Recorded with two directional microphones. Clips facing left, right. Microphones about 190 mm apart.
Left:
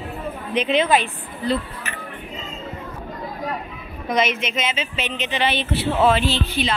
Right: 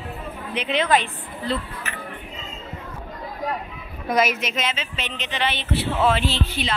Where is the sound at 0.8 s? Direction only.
10° left (ahead or behind).